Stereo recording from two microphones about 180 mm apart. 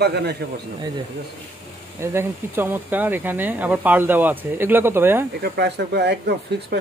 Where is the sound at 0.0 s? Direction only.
65° right (ahead or behind).